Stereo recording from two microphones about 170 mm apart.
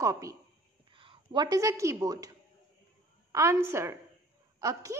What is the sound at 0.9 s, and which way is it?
Speech, 30° right (ahead or behind).